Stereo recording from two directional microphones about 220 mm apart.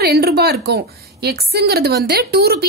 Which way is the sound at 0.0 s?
45° right (ahead or behind).